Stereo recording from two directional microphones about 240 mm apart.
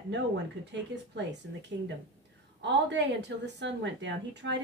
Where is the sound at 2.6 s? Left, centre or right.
Right.